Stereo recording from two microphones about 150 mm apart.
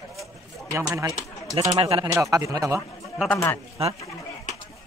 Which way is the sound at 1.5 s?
40° right (ahead or behind).